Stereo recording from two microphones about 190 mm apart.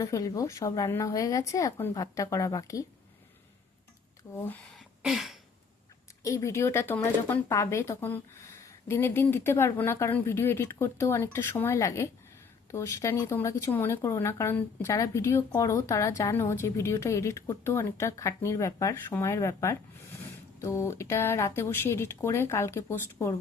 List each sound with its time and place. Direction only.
0.0 s speech: 20° left (ahead or behind)
4.2 s speech: 20° left (ahead or behind)
4.7 s throat clearing: centre (ahead or behind)
6.2 s speech: 15° left (ahead or behind)